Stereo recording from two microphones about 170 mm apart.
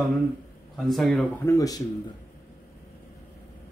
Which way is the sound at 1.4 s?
20° left (ahead or behind).